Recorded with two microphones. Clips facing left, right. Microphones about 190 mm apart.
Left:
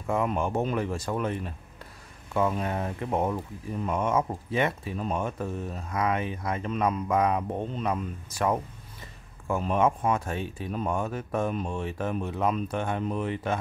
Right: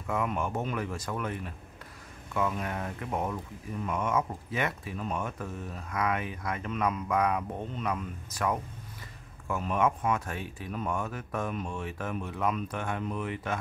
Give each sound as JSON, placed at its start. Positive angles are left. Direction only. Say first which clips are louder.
{"t": 0.0, "sound": "speech", "louder": "left 4 dB", "side_deg": 30}